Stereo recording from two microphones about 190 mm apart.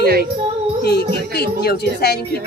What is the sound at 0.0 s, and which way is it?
Music, 55° right (ahead or behind).